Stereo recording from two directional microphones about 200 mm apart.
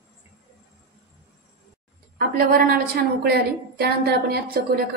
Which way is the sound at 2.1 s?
45° right (ahead or behind).